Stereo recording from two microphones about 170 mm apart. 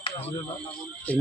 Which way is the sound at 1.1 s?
10° left (ahead or behind).